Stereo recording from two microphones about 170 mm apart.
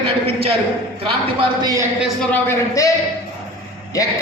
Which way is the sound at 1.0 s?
25° right (ahead or behind).